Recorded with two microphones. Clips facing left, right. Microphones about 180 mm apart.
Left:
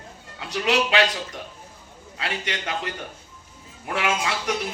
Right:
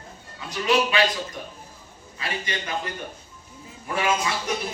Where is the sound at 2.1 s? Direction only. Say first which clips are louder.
Left 1 dB; 70° left (ahead or behind).